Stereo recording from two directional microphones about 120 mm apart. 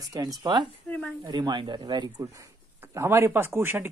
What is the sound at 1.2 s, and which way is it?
Speech, 35° right (ahead or behind).